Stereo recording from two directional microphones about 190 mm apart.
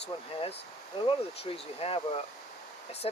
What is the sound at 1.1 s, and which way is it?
Speech, 30° left (ahead or behind).